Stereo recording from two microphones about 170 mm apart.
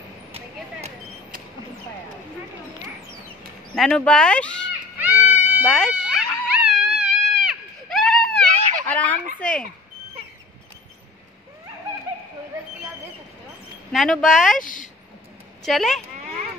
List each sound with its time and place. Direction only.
3.7 s speech: 5° left (ahead or behind)
4.9 s music: 10° right (ahead or behind)
5.7 s a sound: 5° left (ahead or behind)
9.4 s speech: 5° left (ahead or behind)
13.9 s speech: centre (ahead or behind)
14.6 s a woman's voice: 50° left (ahead or behind)
15.6 s speech: centre (ahead or behind)